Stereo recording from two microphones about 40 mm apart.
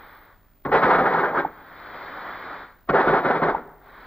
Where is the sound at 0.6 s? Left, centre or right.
Left.